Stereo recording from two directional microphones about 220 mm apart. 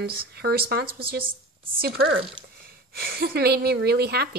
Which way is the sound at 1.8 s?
45° right (ahead or behind).